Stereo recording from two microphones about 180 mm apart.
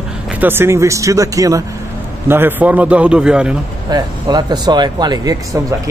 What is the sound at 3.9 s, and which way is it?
Speech, 20° right (ahead or behind).